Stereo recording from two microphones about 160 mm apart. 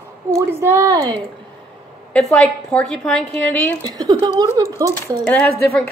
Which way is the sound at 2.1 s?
5° left (ahead or behind).